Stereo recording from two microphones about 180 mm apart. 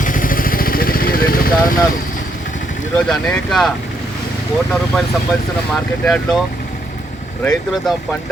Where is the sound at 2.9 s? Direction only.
5° left (ahead or behind).